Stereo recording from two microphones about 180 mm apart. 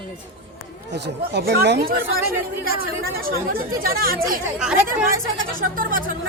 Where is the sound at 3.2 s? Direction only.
55° right (ahead or behind).